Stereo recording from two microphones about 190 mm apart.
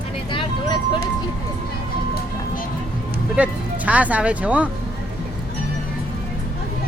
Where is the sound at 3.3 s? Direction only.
5° right (ahead or behind).